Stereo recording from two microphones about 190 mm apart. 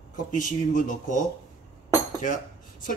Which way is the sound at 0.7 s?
40° left (ahead or behind).